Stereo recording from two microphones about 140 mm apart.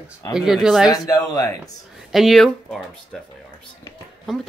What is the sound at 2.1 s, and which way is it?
Speech, centre (ahead or behind).